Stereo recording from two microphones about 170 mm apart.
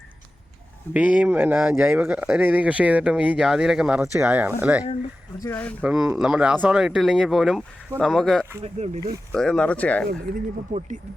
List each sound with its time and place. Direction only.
0.9 s speech: 10° right (ahead or behind)
5.4 s speech: 10° left (ahead or behind)
5.8 s speech: 5° right (ahead or behind)
8.8 s speech: 40° right (ahead or behind)
9.3 s speech: 5° left (ahead or behind)
10.7 s speech: 40° right (ahead or behind)